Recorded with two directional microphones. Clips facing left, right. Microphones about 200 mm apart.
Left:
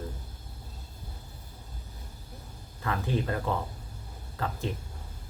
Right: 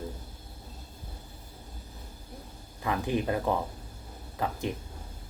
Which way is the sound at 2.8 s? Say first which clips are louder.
Right 2 dB; 15° right (ahead or behind).